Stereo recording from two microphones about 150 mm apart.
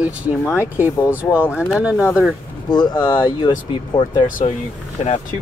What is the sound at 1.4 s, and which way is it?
Speech, 15° left (ahead or behind).